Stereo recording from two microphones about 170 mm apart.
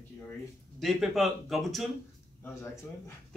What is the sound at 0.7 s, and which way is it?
Speech, centre (ahead or behind).